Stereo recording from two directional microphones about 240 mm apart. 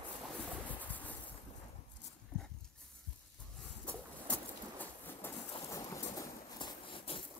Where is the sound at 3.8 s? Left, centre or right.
Centre; by 7.2 s left.